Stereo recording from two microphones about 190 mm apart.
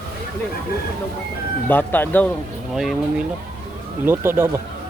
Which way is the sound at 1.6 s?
10° left (ahead or behind).